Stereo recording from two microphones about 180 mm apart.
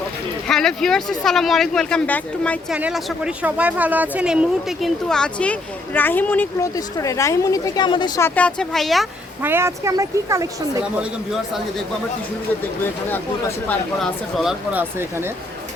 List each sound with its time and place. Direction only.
0.4 s speech: 5° left (ahead or behind)
2.7 s speech: 5° right (ahead or behind); by 8.3 s 20° left (ahead or behind)
8.4 s speech: 5° left (ahead or behind)
9.4 s speech: 15° right (ahead or behind)
13.7 s speech: centre (ahead or behind)
14.7 s speech: 10° right (ahead or behind)